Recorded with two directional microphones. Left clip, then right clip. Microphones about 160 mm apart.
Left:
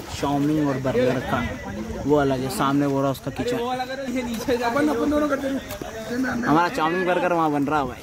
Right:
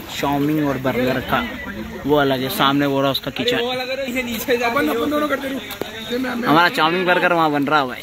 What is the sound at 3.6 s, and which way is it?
A man's voice, 80° left.